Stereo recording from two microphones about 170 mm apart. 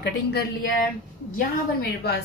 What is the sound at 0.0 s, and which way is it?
Speech, 70° left (ahead or behind).